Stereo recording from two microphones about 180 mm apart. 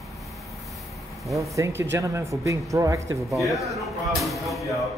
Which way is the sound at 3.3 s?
Centre (ahead or behind).